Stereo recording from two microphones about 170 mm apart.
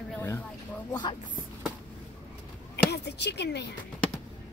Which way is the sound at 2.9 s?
80° left.